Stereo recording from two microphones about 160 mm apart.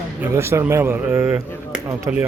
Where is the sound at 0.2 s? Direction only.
15° right (ahead or behind).